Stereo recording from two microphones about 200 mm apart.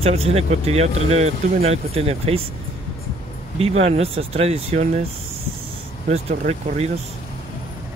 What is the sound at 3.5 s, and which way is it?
Speech, 30° right (ahead or behind).